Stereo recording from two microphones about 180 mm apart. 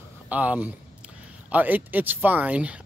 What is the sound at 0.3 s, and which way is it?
Speech, 10° right (ahead or behind).